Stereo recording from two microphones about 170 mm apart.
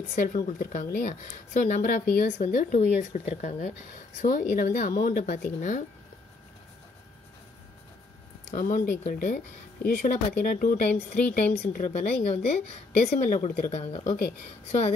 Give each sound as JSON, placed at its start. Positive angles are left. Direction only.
{"t": 0.1, "sound": "a woman's voice", "side_deg": 50}
{"t": 8.5, "sound": "a woman's voice", "side_deg": 50}